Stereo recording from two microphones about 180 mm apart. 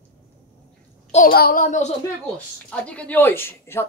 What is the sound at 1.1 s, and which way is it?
Speech, 55° left (ahead or behind).